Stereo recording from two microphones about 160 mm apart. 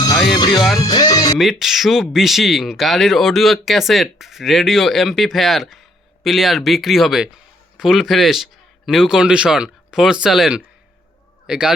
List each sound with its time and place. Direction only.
0.5 s speech: centre (ahead or behind)
0.8 s music: 25° left (ahead or behind)
1.4 s speech: centre (ahead or behind)